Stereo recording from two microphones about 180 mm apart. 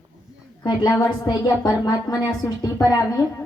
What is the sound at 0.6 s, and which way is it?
A woman's voice, 25° left (ahead or behind).